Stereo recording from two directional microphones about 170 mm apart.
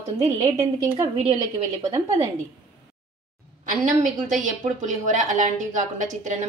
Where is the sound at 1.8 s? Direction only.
20° right (ahead or behind).